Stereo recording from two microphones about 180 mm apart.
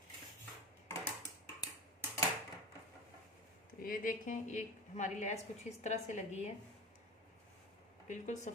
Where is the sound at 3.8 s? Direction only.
50° left (ahead or behind).